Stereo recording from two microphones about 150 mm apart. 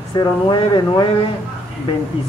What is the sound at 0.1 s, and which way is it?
Speech, 30° left (ahead or behind).